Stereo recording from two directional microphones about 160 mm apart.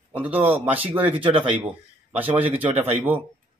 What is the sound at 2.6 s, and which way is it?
Speech, 10° right (ahead or behind).